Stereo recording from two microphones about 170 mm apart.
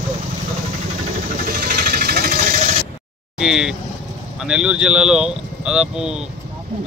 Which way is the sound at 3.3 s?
5° right (ahead or behind).